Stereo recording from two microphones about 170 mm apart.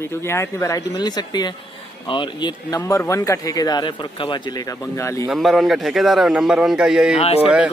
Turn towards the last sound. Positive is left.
turn(degrees=-5)  # may be behind; listen again after turning